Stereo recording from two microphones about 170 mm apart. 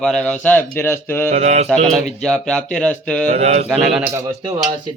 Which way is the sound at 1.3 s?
40° right (ahead or behind).